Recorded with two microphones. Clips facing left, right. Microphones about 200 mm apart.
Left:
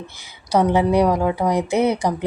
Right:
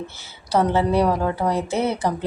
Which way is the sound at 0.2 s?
15° left (ahead or behind).